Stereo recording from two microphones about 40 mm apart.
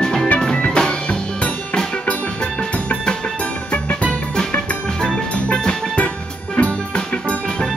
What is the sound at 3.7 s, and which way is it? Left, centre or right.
Music, left.